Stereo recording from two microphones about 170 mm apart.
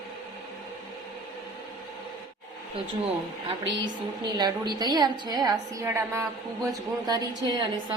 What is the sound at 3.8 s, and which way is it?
A woman's voice, 25° right (ahead or behind).